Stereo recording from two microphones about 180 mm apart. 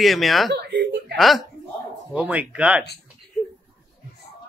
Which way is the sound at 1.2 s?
Centre (ahead or behind).